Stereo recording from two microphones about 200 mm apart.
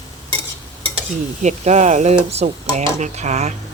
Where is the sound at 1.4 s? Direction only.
35° right (ahead or behind).